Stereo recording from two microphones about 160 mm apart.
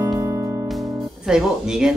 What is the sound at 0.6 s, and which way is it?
Music, centre (ahead or behind).